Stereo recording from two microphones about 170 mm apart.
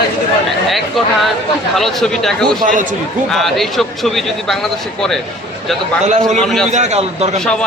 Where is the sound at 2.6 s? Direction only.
50° right (ahead or behind).